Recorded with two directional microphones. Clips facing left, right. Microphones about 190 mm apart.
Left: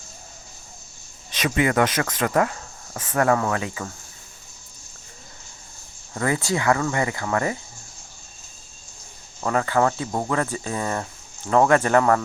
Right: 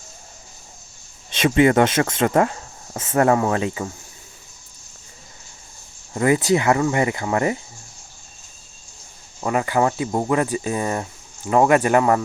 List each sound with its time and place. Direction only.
1.3 s speech: 25° right (ahead or behind)
6.1 s speech: 20° right (ahead or behind)
9.4 s speech: 15° right (ahead or behind)